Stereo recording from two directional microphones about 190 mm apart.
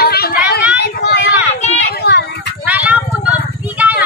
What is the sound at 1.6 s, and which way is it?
Children playing, 35° left (ahead or behind).